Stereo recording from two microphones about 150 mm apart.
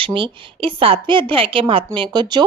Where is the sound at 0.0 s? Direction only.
35° right (ahead or behind).